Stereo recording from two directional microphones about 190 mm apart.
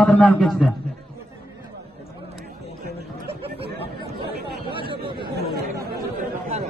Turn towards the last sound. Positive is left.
turn(degrees=-55)  # may be behind; listen again after turning